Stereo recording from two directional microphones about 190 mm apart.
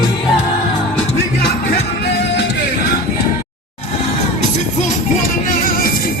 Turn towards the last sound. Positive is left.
turn(degrees=50)  # may be behind; listen again after turning